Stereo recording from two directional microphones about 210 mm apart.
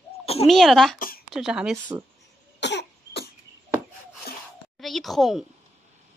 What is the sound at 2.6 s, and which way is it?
Cough, 55° left (ahead or behind).